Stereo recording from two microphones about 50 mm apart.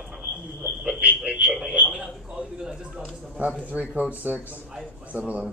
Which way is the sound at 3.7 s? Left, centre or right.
Right.